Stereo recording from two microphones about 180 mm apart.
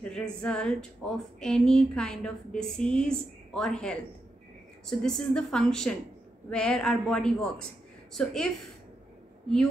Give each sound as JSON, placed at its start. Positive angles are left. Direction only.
{"t": 0.0, "sound": "speech", "side_deg": 5}